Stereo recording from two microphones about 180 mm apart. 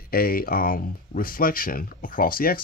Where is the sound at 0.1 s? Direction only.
55° left (ahead or behind).